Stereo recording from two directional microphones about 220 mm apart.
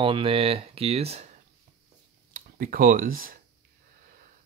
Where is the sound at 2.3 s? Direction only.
40° right (ahead or behind).